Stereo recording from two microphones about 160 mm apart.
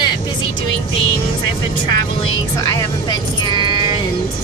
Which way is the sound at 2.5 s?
25° left (ahead or behind).